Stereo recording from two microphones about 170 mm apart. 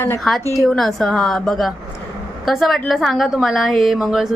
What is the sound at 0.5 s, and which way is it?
A woman's voice, centre (ahead or behind).